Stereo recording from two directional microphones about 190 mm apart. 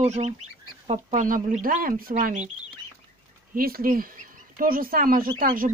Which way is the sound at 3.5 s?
50° right (ahead or behind).